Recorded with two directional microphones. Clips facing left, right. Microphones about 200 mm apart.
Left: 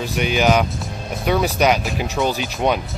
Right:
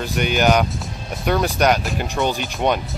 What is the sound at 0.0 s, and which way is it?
Speech, centre (ahead or behind).